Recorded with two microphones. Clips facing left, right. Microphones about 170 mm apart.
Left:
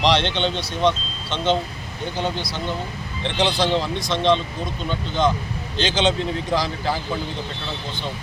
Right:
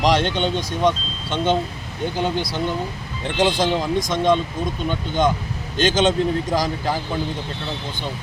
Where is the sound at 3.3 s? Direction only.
45° right (ahead or behind).